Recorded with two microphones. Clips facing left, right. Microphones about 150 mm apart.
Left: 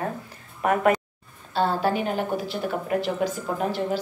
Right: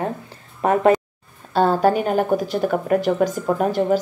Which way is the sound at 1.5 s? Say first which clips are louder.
Right 6 dB; 45° right (ahead or behind).